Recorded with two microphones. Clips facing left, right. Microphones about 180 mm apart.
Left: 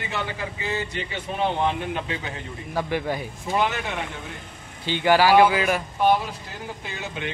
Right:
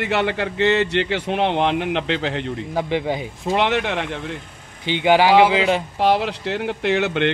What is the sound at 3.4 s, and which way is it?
Speech, 75° right (ahead or behind).